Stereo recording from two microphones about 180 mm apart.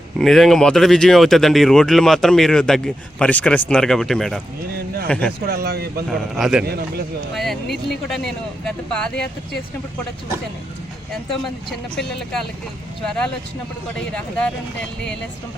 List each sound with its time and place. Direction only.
0.2 s speech: centre (ahead or behind)
5.5 s speech: 60° right (ahead or behind)
6.1 s speech: centre (ahead or behind)
14.1 s speech: 5° left (ahead or behind)